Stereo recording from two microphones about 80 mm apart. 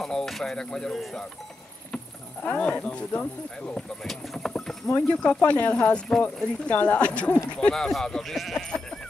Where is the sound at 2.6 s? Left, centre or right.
Centre.